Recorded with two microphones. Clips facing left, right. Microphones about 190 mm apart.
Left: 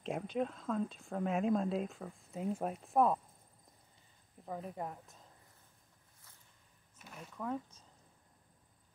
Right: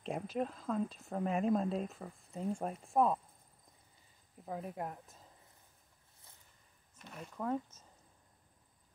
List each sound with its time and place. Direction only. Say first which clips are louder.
0.0 s speech: left 1 dB; centre (ahead or behind)
4.5 s speech: right 1 dB; 5° right (ahead or behind)
7.0 s a sound: right 3 dB; 5° left (ahead or behind)